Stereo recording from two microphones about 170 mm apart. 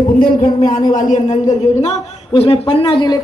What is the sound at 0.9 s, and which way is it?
Speech, 50° left (ahead or behind).